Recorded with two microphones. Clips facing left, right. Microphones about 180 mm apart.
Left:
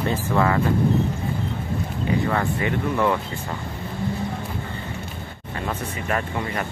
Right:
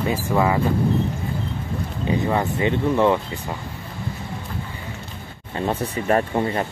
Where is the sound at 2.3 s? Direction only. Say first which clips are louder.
Right 2 dB; 20° right (ahead or behind).